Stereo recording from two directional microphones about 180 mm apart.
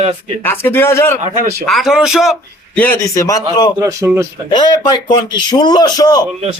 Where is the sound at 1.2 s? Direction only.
45° right (ahead or behind).